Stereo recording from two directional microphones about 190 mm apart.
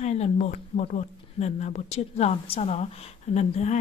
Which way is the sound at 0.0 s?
35° left (ahead or behind).